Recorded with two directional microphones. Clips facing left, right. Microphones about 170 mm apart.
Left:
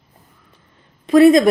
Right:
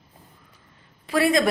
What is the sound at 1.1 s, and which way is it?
Speech, 20° left (ahead or behind).